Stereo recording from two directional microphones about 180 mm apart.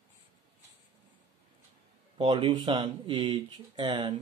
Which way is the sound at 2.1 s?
25° right (ahead or behind).